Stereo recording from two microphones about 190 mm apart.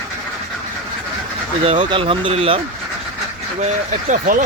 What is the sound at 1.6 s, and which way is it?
Speech, 25° right (ahead or behind).